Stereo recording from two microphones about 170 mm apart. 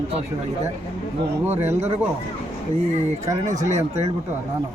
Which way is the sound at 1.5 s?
15° right (ahead or behind).